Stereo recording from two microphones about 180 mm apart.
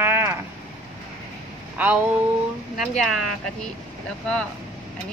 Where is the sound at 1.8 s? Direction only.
10° right (ahead or behind).